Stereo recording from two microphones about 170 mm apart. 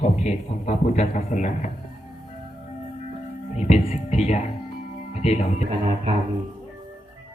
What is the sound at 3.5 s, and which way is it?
Speech, 40° left (ahead or behind).